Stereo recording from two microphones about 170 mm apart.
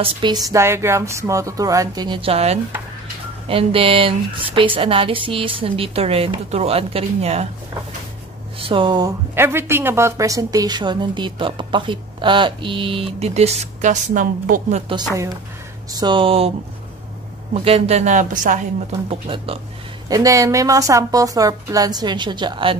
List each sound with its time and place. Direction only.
0.0 s a woman's voice: 30° right (ahead or behind)
0.5 s a woman's voice: 15° right (ahead or behind); by 7.4 s 40° right (ahead or behind)
8.5 s a woman's voice: 30° right (ahead or behind)
9.3 s a woman's voice: 15° right (ahead or behind); by 14.8 s 55° right (ahead or behind)
14.9 s a woman's voice: 25° right (ahead or behind)
17.6 s speech: 35° right (ahead or behind)
20.1 s a woman's voice: 20° right (ahead or behind)